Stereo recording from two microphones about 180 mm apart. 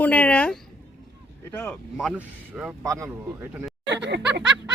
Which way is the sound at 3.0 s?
5° right (ahead or behind).